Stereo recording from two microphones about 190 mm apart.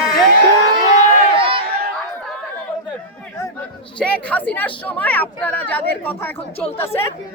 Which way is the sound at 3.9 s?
5° left (ahead or behind).